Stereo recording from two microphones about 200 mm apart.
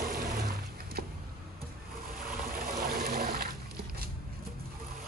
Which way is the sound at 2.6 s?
45° right (ahead or behind).